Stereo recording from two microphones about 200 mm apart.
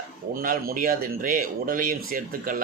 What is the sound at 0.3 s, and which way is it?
Speech, 45° right (ahead or behind).